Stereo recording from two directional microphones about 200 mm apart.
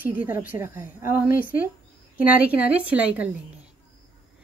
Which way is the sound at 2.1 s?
5° right (ahead or behind).